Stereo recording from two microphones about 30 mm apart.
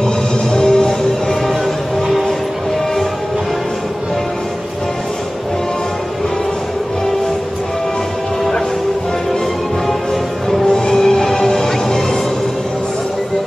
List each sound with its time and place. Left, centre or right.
0.0 s music: centre
10.7 s music: centre